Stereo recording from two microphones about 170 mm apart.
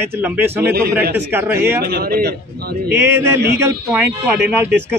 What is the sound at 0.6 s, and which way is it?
Speech, 70° right (ahead or behind).